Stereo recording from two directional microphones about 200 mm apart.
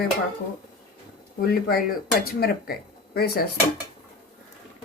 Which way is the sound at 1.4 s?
50° left (ahead or behind).